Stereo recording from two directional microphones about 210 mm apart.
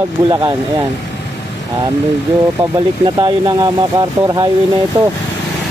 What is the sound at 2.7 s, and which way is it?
Speech, 20° right (ahead or behind).